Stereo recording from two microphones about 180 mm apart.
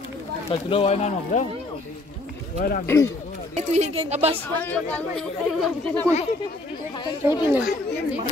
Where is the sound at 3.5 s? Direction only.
40° right (ahead or behind).